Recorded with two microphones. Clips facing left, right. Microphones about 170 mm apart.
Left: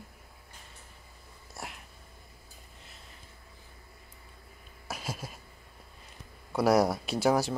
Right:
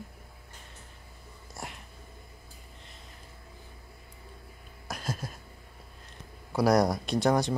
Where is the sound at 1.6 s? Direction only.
Centre (ahead or behind).